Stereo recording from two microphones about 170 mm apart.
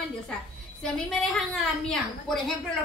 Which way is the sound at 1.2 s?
5° left (ahead or behind).